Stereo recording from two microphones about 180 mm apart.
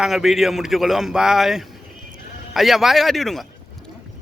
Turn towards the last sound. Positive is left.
turn(degrees=0)  # may be behind; listen again after turning